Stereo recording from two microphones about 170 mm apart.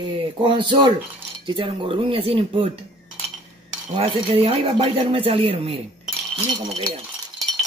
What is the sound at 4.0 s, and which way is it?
Speech, 35° right (ahead or behind).